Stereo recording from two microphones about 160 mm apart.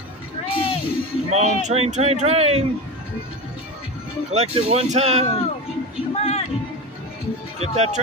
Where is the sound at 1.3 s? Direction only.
40° right (ahead or behind).